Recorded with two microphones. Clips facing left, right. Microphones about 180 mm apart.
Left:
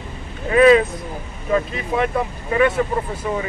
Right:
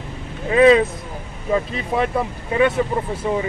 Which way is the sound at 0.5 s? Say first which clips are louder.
Even; 25° right (ahead or behind).